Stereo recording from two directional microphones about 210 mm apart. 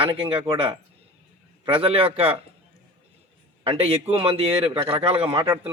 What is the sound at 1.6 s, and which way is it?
Speech, 25° right (ahead or behind).